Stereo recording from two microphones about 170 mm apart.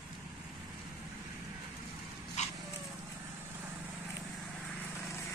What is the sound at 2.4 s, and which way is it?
Dog, 40° left (ahead or behind).